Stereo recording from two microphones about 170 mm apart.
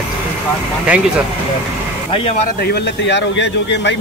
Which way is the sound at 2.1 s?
35° left (ahead or behind).